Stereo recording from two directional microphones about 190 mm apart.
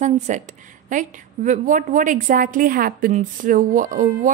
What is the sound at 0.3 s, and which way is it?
A woman's voice, 40° right (ahead or behind).